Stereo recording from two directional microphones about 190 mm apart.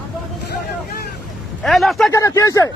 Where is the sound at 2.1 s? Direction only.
15° left (ahead or behind).